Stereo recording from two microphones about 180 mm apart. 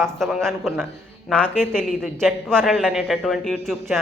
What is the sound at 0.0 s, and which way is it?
A man's voice, centre (ahead or behind).